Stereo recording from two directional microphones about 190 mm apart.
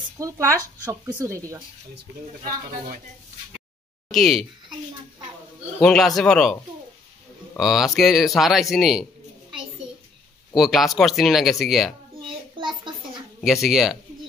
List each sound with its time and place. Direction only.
0.2 s speech: 15° right (ahead or behind)
4.1 s speech: centre (ahead or behind)
5.8 s speech: centre (ahead or behind)
10.5 s speech: centre (ahead or behind)
13.4 s speech: centre (ahead or behind)